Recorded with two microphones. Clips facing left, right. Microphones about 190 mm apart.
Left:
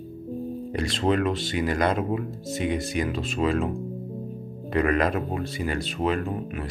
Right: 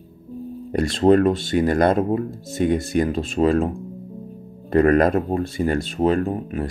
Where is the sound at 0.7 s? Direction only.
45° right (ahead or behind).